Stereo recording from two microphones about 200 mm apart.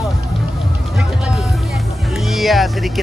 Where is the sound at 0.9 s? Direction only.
Centre (ahead or behind).